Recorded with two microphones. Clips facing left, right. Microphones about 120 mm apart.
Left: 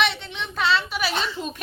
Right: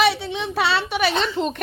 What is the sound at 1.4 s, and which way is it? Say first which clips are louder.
Speech: right 8 dB; 65° right (ahead or behind).